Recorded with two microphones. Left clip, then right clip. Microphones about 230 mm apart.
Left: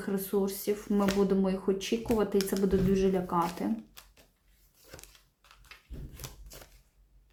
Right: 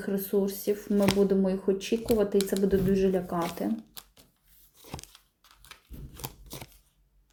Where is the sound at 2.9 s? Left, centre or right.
Centre.